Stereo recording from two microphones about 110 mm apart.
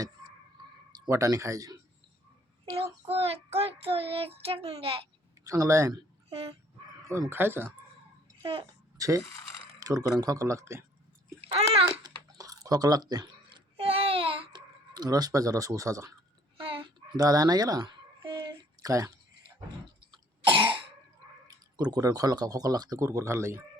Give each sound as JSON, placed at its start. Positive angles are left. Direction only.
{"t": 1.0, "sound": "speech", "side_deg": -30}
{"t": 2.7, "sound": "child singing", "side_deg": -65}
{"t": 5.5, "sound": "speech", "side_deg": -30}
{"t": 6.3, "sound": "child singing", "side_deg": -60}
{"t": 7.1, "sound": "speech", "side_deg": -25}
{"t": 9.0, "sound": "speech", "side_deg": -30}
{"t": 11.3, "sound": "babbling", "side_deg": -65}
{"t": 11.9, "sound": "a sound", "side_deg": -30}
{"t": 13.7, "sound": "a sound", "side_deg": -60}
{"t": 14.9, "sound": "speech", "side_deg": -35}
{"t": 16.6, "sound": "a sound", "side_deg": -50}
{"t": 17.2, "sound": "a sound", "side_deg": -35}
{"t": 21.8, "sound": "speech", "side_deg": -35}